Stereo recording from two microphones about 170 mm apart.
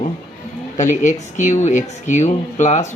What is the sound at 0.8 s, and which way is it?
Speech, 45° left (ahead or behind).